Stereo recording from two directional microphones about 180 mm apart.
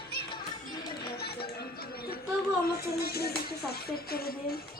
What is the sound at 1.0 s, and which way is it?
Music, 60° left (ahead or behind).